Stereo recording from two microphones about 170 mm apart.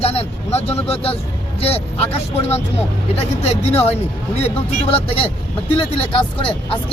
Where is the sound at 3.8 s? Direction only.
35° left (ahead or behind).